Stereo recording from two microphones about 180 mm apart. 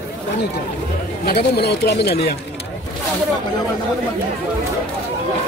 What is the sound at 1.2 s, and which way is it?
Speech, 60° left (ahead or behind).